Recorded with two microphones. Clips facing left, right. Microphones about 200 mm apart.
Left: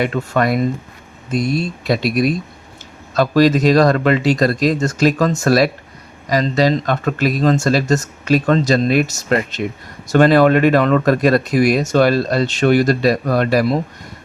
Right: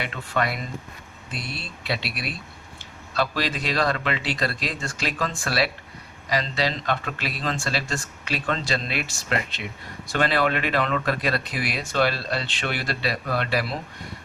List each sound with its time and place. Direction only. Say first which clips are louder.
0.0 s speech: left 10 dB; 45° left (ahead or behind)